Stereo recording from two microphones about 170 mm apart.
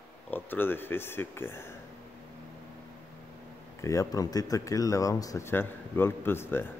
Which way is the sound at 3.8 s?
20° left (ahead or behind).